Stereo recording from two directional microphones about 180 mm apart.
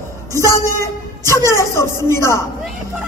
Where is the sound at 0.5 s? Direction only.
15° left (ahead or behind).